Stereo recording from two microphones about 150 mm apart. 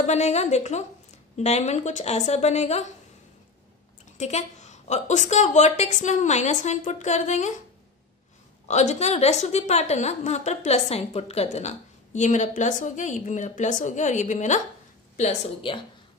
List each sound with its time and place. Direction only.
0.0 s a woman's voice: 50° left (ahead or behind)
4.2 s a woman's voice: 50° left (ahead or behind)
8.6 s a woman's voice: 50° left (ahead or behind)
15.1 s speech: 40° left (ahead or behind)